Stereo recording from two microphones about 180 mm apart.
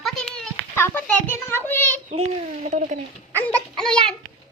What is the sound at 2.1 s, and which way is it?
Speech, 40° right (ahead or behind).